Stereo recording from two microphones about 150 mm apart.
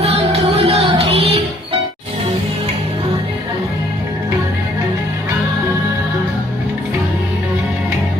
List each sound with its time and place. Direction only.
0.6 s music: 40° right (ahead or behind)